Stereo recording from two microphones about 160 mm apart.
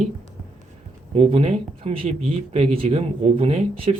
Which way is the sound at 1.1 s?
40° right (ahead or behind).